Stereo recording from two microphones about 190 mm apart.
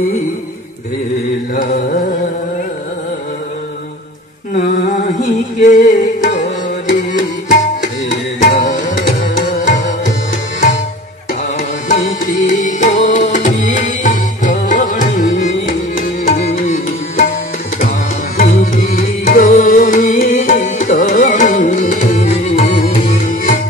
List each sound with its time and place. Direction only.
1.5 s carnatic music: 45° left (ahead or behind)
4.6 s a sound: 40° left (ahead or behind)
7.2 s tabla: 40° left (ahead or behind)
9.5 s music: 40° left (ahead or behind)
11.9 s music: 40° left (ahead or behind)
18.4 s music: 40° left (ahead or behind)